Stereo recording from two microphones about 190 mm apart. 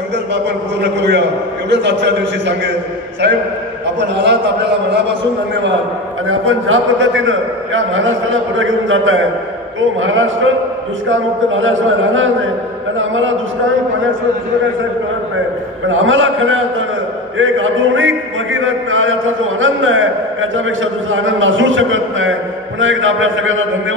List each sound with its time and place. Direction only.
0.3 s a man's voice: 65° right (ahead or behind)
4.0 s a man's voice: 65° right (ahead or behind)
6.2 s a man's voice: 90° right
15.9 s a man's voice: 90° right